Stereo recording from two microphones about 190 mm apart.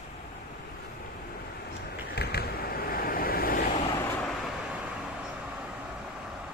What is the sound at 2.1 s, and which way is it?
Waves, 55° left (ahead or behind).